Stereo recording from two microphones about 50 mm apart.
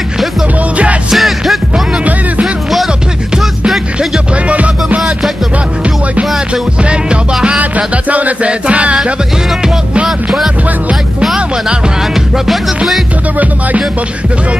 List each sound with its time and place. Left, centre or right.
1.1 s music: centre
3.6 s music: centre
4.5 s music: right
6.1 s music: right
10.0 s music: centre
12.4 s music: centre
13.4 s music: right